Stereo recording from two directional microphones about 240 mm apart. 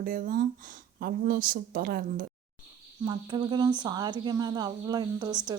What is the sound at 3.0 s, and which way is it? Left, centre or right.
Speech, centre.